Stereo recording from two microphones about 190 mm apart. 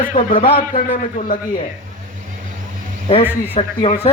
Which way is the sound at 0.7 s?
45° left (ahead or behind).